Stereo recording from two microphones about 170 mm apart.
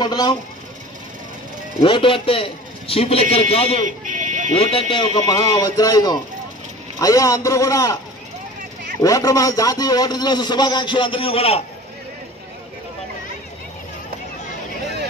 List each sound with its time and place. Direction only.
0.0 s a man's voice: 25° left (ahead or behind)
1.8 s a man's voice: 30° left (ahead or behind)
3.8 s buzzer: 50° right (ahead or behind)
4.6 s a man's voice: 35° left (ahead or behind)
9.0 s a man's voice: 20° left (ahead or behind)